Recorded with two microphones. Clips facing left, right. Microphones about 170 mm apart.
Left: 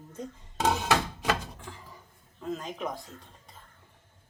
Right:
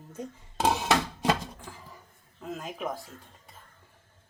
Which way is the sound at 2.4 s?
5° right (ahead or behind).